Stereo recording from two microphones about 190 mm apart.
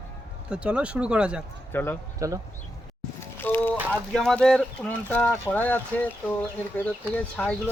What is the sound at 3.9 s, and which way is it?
Speech, 5° left (ahead or behind).